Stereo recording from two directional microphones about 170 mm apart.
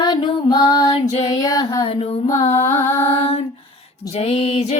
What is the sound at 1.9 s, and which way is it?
Music, 35° left (ahead or behind).